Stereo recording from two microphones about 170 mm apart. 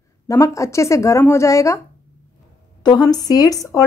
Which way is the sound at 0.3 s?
20° left (ahead or behind).